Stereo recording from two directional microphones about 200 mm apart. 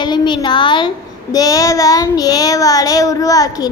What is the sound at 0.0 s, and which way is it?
A child's voice, 20° left (ahead or behind).